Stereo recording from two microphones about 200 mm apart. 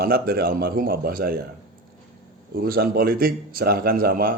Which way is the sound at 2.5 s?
50° right (ahead or behind).